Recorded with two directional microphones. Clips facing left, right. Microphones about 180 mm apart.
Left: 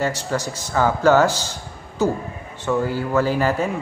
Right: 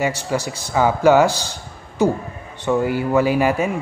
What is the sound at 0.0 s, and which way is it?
A man's voice, 10° right (ahead or behind).